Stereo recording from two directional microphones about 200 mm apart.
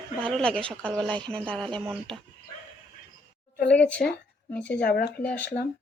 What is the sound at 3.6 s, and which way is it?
A woman's voice, 5° left (ahead or behind).